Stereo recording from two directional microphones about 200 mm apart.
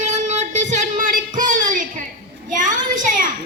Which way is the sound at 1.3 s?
40° right (ahead or behind).